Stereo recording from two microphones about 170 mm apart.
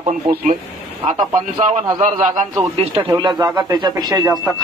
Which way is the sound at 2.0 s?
45° right (ahead or behind).